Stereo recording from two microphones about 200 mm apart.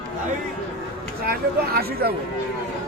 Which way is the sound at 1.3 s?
50° right (ahead or behind).